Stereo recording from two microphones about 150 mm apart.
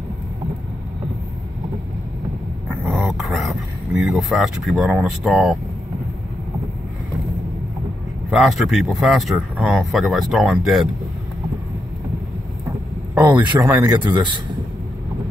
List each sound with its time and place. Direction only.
2.7 s dog: 5° right (ahead or behind)
8.3 s speech: centre (ahead or behind)
13.3 s a man's voice: 30° right (ahead or behind)